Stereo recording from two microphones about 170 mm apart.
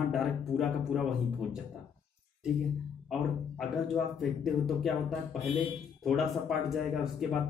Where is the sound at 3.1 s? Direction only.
Centre (ahead or behind).